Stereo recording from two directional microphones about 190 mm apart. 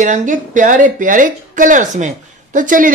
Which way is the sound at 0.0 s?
40° right (ahead or behind).